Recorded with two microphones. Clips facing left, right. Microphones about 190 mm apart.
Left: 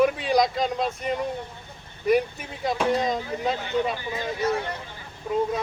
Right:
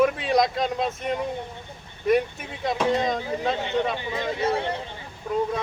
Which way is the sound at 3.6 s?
25° right (ahead or behind).